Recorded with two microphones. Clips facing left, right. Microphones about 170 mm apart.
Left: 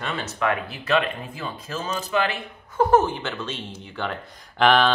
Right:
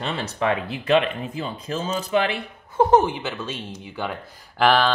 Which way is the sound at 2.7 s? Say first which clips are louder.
Right 1 dB; 20° right (ahead or behind).